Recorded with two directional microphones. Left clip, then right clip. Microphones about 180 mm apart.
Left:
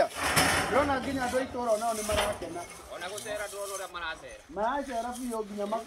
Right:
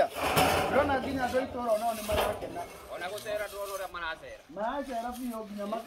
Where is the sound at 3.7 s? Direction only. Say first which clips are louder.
Right 2 dB; 20° right (ahead or behind).